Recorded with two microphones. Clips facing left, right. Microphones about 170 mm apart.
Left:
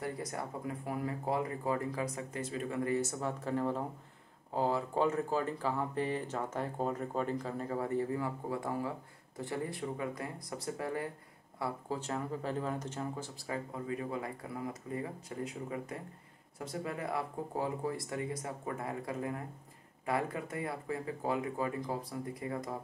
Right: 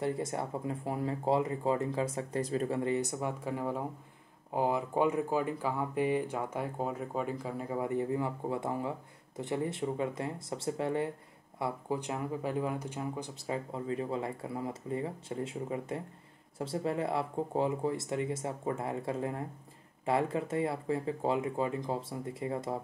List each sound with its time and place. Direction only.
0.0 s speech: 25° right (ahead or behind)
2.8 s speech: 20° right (ahead or behind)
11.6 s speech: 15° right (ahead or behind)